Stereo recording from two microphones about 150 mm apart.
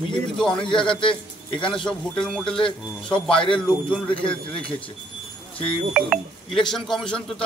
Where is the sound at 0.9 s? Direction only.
35° left (ahead or behind).